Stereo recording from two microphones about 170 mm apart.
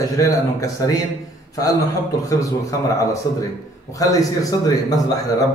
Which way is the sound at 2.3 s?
20° left (ahead or behind).